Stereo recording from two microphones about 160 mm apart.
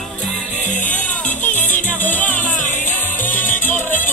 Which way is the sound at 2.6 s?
50° left (ahead or behind).